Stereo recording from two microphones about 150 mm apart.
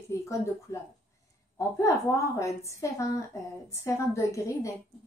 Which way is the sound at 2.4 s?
20° left (ahead or behind).